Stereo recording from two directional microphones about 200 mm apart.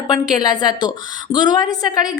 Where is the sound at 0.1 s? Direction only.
20° left (ahead or behind).